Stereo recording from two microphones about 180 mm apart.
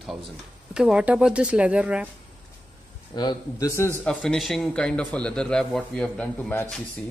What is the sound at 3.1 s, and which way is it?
Speech, 20° left (ahead or behind).